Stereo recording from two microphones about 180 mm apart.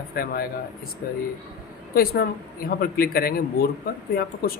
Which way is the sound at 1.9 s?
55° left (ahead or behind).